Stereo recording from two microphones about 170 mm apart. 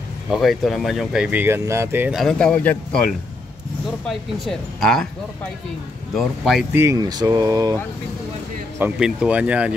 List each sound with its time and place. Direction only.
0.3 s speech: centre (ahead or behind)
2.1 s speech: 5° left (ahead or behind)
6.1 s speech: centre (ahead or behind)
6.7 s speech: 15° right (ahead or behind)
9.0 s speech: 5° right (ahead or behind)